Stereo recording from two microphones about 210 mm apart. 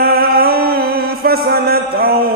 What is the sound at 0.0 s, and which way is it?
Mantra, 45° right (ahead or behind).